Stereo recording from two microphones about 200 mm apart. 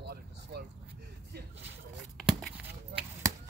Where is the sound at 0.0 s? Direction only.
55° right (ahead or behind).